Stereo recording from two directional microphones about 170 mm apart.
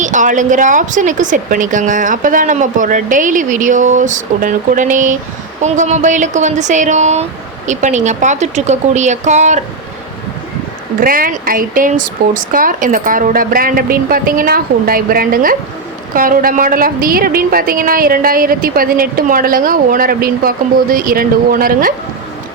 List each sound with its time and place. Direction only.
0.0 s a woman's voice: 50° right (ahead or behind)
11.0 s a woman's voice: 55° right (ahead or behind)